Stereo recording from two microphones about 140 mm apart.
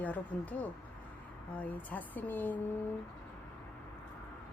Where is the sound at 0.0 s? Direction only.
10° left (ahead or behind).